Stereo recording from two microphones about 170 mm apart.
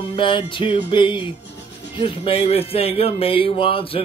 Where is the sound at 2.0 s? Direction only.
30° left (ahead or behind).